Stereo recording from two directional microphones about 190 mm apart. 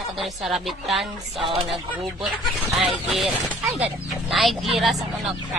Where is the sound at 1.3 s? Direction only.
30° right (ahead or behind).